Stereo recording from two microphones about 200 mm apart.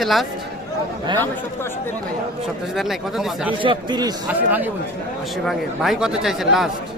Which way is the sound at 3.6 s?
25° right (ahead or behind).